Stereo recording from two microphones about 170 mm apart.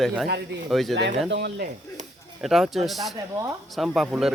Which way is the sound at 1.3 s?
85° right.